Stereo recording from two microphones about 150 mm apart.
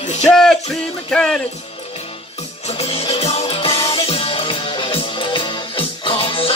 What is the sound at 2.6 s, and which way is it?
Music, 40° left (ahead or behind).